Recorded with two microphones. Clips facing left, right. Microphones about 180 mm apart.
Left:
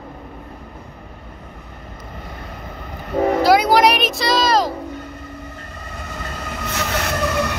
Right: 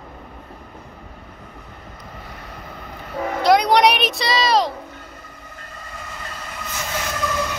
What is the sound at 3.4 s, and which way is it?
Speech, 5° left (ahead or behind).